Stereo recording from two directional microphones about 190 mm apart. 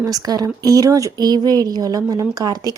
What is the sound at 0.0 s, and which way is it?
A woman's voice, 20° right (ahead or behind).